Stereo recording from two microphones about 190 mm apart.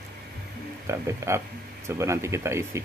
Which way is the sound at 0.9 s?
15° right (ahead or behind).